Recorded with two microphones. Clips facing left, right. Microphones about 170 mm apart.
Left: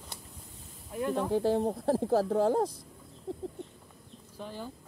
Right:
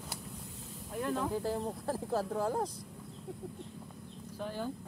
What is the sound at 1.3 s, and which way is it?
Speech, 70° left (ahead or behind).